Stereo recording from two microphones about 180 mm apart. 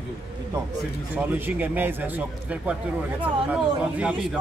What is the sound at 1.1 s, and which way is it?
Speech, 10° right (ahead or behind).